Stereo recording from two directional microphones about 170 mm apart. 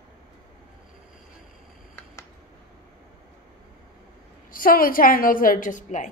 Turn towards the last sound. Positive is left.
turn(degrees=50)  # may be behind; listen again after turning